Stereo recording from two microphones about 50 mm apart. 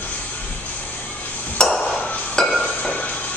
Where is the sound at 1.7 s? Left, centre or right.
Centre.